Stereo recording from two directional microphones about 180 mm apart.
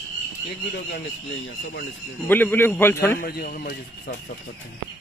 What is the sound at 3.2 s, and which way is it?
Speech, 55° left (ahead or behind).